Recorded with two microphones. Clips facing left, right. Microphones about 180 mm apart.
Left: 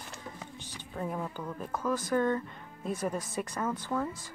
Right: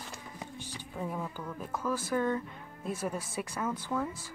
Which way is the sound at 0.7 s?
5° right (ahead or behind).